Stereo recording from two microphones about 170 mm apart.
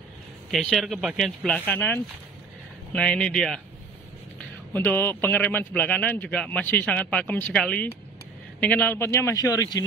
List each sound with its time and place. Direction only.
0.5 s speech: centre (ahead or behind)
4.7 s a man's voice: 10° left (ahead or behind)